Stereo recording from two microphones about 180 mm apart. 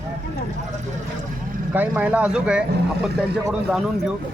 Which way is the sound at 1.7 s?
10° right (ahead or behind).